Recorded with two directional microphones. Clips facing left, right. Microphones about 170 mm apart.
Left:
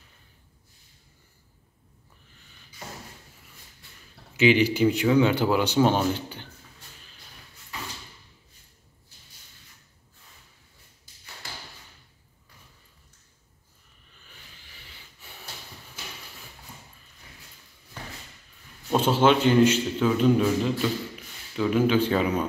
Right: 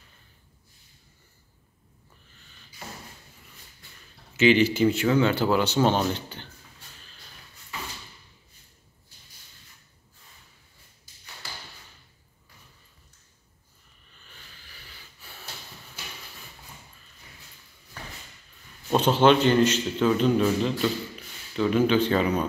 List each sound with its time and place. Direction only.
4.4 s speech: 10° left (ahead or behind)
14.7 s snort: 20° left (ahead or behind)
18.9 s speech: 5° left (ahead or behind)